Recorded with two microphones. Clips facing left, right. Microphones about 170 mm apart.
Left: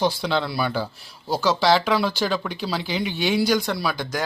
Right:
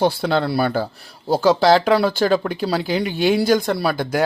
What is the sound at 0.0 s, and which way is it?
Speech, 50° right (ahead or behind).